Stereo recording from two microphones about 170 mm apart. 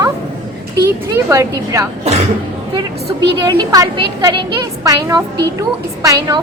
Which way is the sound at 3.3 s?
25° right (ahead or behind).